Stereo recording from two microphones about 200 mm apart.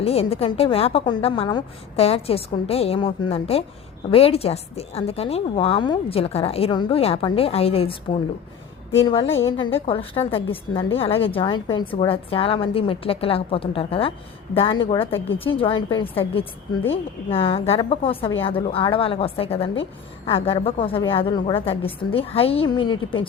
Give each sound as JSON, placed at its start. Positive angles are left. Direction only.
{"t": 0.0, "sound": "a woman's voice", "side_deg": 30}